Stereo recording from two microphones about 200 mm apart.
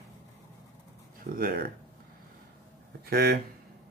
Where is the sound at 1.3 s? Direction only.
50° right (ahead or behind).